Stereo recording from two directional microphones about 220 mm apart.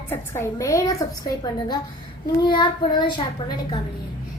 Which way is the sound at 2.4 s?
20° left (ahead or behind).